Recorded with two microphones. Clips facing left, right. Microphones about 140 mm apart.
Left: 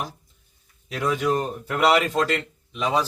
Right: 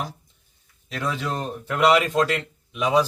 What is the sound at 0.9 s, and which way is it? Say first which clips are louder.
A man's voice: left 5 dB; 15° left (ahead or behind).